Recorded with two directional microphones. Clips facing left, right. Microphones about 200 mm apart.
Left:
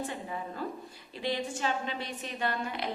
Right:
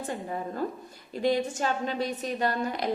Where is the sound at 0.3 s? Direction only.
45° right (ahead or behind).